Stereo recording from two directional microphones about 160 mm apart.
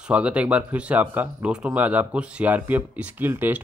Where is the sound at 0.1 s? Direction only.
10° right (ahead or behind).